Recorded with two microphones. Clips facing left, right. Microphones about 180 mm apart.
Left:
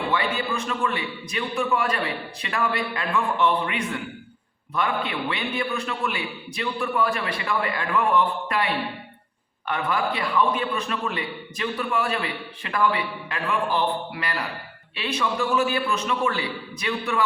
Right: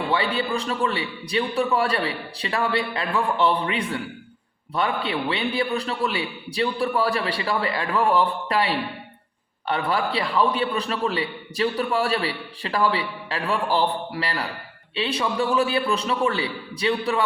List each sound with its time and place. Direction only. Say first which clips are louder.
0.1 s a man's voice: right 3 dB; 30° right (ahead or behind)